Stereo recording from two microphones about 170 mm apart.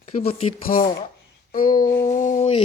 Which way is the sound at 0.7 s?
60° left (ahead or behind).